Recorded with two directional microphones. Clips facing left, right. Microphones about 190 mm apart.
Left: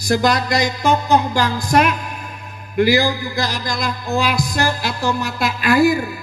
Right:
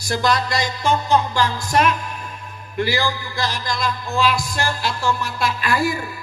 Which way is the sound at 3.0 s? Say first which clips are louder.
Left 4 dB; 45° left (ahead or behind).